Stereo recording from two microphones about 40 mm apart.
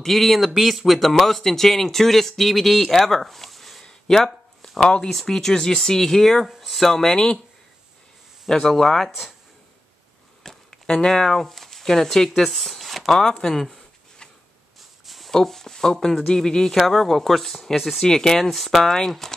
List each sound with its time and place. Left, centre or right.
0.0 s speech: centre
3.8 s a sound: centre
4.6 s speech: left
5.1 s speech: centre
7.1 s speech: left
8.5 s speech: centre
10.4 s speech: centre
14.8 s a sound: centre
15.3 s speech: centre
18.0 s speech: centre
18.9 s speech: centre